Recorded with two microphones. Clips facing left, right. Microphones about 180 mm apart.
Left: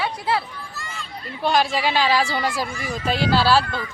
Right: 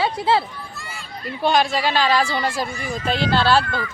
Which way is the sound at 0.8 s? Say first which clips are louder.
Right 1 dB; 5° right (ahead or behind).